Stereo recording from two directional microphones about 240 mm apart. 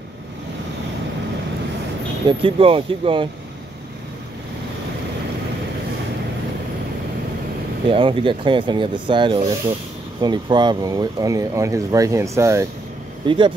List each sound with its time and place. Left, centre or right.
2.2 s speech: right
7.9 s speech: right